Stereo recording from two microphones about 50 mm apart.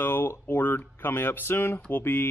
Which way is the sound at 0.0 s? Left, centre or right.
Left.